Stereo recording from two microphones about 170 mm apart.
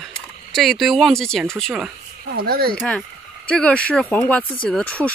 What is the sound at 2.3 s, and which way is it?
Speech, 65° right (ahead or behind).